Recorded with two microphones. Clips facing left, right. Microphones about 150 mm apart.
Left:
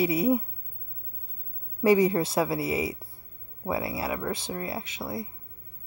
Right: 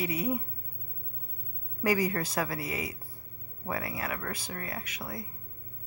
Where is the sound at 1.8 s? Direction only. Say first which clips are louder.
Left 7 dB; 25° left (ahead or behind).